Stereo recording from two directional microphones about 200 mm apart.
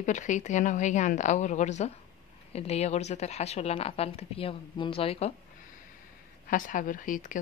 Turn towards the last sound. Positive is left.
turn(degrees=40)  # may be behind; listen again after turning